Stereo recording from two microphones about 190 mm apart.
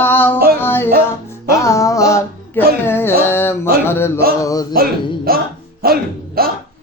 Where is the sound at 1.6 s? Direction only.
15° left (ahead or behind).